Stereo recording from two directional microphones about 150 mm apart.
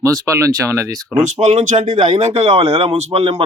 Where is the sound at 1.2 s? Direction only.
50° right (ahead or behind).